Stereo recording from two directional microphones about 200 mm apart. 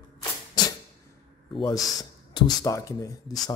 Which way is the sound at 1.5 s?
25° left (ahead or behind).